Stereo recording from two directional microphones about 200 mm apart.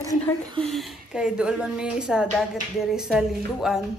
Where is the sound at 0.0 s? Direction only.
15° left (ahead or behind).